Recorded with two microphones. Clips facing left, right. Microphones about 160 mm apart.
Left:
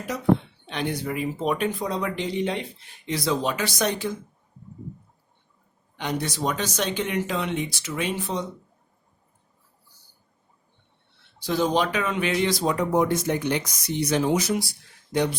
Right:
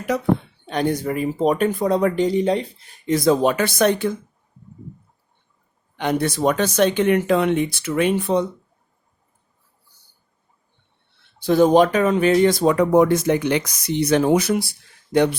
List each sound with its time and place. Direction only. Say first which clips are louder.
0.1 s speech: right 11 dB; 65° right (ahead or behind)
0.7 s speech: right 7 dB; 45° right (ahead or behind)
6.0 s speech: right 7 dB; 55° right (ahead or behind)
11.3 s speech: right 9 dB; 55° right (ahead or behind)